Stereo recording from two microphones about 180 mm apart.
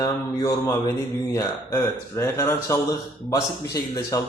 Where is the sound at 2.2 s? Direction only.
15° left (ahead or behind).